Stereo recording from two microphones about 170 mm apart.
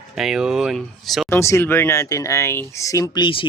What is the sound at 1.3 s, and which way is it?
Speech, 15° left (ahead or behind).